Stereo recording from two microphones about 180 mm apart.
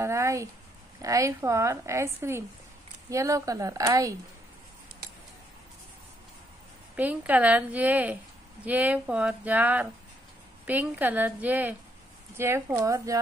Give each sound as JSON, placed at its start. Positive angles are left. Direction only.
{"t": 0.0, "sound": "a woman's voice", "side_deg": -15}
{"t": 7.0, "sound": "a woman's voice", "side_deg": -10}